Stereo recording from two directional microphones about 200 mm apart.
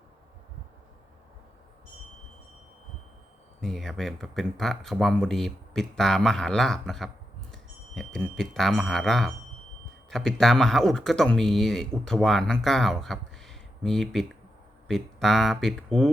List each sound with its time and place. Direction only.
3.6 s speech: centre (ahead or behind)